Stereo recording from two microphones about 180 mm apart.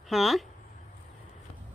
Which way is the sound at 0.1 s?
Centre (ahead or behind).